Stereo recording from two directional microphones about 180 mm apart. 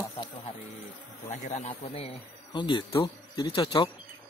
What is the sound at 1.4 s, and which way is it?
Speech, 40° left (ahead or behind).